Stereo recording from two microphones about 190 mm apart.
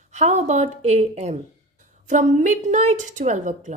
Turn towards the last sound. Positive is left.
turn(degrees=-40)  # may be behind; listen again after turning